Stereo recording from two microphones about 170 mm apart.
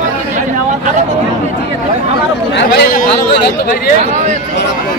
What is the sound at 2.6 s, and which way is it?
Chatter, 65° left (ahead or behind).